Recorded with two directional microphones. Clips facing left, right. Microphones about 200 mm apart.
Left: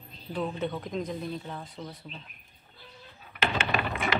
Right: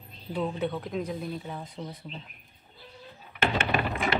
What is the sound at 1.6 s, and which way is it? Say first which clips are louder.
Speech: right 2 dB; 20° right (ahead or behind).